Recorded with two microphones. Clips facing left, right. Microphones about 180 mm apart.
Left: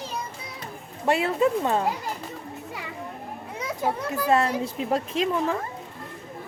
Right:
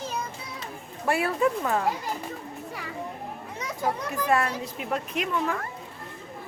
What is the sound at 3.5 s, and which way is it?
Children playing, 10° left (ahead or behind).